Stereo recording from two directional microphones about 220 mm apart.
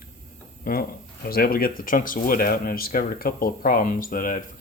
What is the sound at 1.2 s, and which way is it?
Speech, 45° left (ahead or behind).